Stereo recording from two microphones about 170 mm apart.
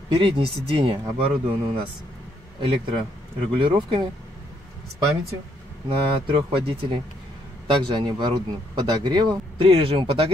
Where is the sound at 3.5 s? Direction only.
30° right (ahead or behind).